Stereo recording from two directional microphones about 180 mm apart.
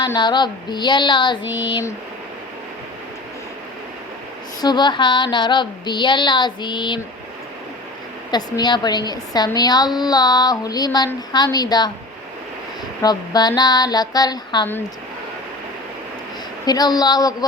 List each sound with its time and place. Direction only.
0.0 s a woman's voice: 25° left (ahead or behind)
4.6 s a woman's voice: 25° left (ahead or behind)
8.3 s a woman's voice: 20° left (ahead or behind)
13.0 s a woman's voice: 20° left (ahead or behind)
16.6 s a woman's voice: 20° left (ahead or behind)